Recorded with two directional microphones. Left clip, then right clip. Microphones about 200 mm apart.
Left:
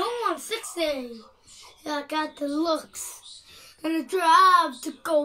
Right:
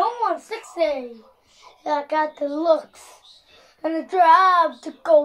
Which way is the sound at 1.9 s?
35° left (ahead or behind).